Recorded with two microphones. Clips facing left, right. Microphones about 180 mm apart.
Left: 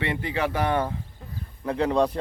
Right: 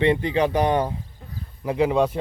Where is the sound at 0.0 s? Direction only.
25° right (ahead or behind).